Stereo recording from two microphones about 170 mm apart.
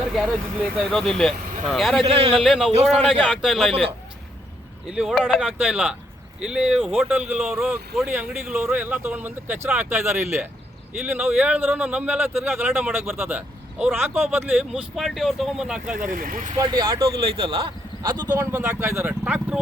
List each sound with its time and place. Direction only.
0.9 s speech: centre (ahead or behind)
2.0 s a man's voice: 35° right (ahead or behind)
2.3 s speech: centre (ahead or behind)
3.7 s a man's voice: 35° right (ahead or behind)
4.9 s a man's voice: 5° right (ahead or behind)
16.0 s speech: 55° right (ahead or behind)
16.5 s speech: 25° right (ahead or behind); by 19.5 s 5° right (ahead or behind)